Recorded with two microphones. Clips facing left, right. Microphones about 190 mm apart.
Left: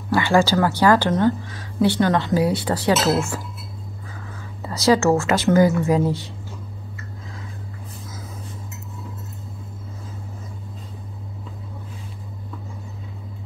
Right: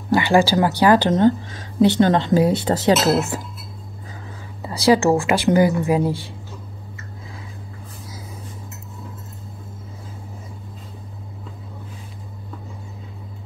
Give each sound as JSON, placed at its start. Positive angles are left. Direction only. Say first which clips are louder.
{"t": 0.1, "sound": "speech", "louder": "right 2 dB", "side_deg": -15}
{"t": 4.6, "sound": "speech", "louder": "right 2 dB", "side_deg": -15}